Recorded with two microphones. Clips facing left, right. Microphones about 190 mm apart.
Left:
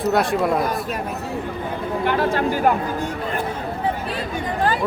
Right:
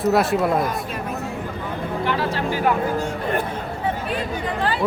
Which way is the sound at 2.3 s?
50° left (ahead or behind).